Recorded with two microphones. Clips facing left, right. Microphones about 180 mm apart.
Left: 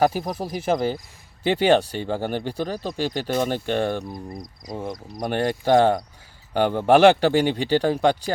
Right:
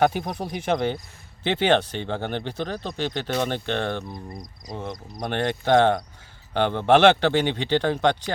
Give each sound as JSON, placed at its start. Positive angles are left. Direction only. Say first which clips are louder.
{"t": 0.0, "sound": "speech", "louder": "left 1 dB", "side_deg": 5}